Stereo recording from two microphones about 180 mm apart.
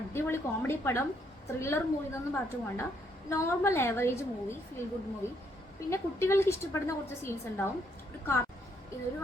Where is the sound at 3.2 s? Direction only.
15° left (ahead or behind).